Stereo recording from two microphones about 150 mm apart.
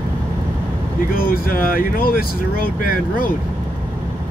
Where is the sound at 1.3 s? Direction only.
75° left (ahead or behind).